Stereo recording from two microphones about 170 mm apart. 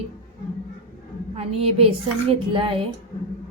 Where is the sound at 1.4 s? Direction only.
35° right (ahead or behind).